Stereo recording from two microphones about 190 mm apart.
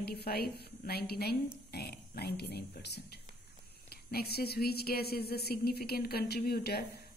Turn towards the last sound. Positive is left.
turn(degrees=55)  # may be behind; listen again after turning